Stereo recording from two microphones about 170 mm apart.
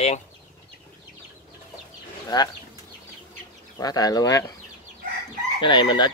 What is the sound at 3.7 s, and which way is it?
Speech, 20° left (ahead or behind).